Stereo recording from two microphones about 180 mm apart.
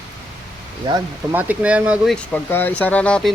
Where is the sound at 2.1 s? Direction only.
10° left (ahead or behind).